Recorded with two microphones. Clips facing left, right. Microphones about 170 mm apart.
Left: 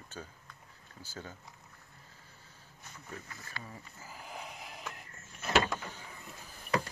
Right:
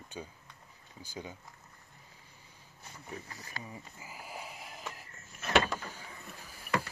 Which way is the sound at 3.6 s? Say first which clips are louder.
Right 2 dB; 10° right (ahead or behind).